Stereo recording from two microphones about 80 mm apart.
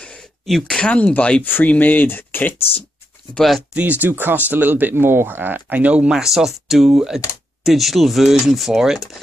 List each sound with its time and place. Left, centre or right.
0.5 s speech: centre
0.7 s speech: centre
3.3 s speech: centre
4.0 s speech: right; by 9.1 s centre